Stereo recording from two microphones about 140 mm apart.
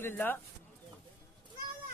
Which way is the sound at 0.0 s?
15° left (ahead or behind).